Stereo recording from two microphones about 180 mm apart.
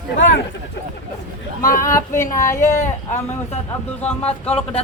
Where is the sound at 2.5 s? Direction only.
45° left (ahead or behind).